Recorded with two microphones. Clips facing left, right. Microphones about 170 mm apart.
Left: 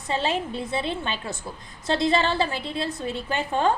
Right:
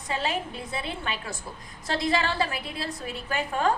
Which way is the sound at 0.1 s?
30° left (ahead or behind).